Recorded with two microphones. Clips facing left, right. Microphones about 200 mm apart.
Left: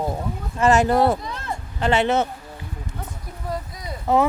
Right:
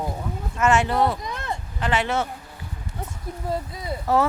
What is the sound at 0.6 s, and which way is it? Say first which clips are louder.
Speech: left 3 dB; 40° left (ahead or behind).